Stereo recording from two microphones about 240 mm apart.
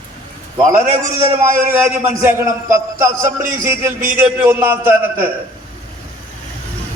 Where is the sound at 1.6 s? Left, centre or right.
Centre.